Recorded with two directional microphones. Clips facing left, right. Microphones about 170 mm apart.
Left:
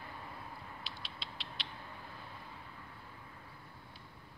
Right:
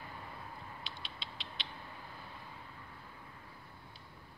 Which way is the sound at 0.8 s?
Centre (ahead or behind).